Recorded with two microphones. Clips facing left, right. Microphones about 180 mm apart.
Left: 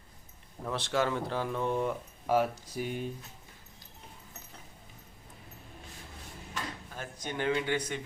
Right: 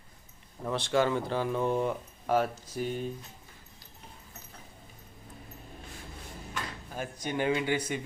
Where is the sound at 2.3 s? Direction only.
15° left (ahead or behind).